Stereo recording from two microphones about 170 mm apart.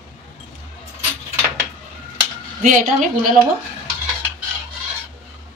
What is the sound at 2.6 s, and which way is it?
Speech, 50° right (ahead or behind).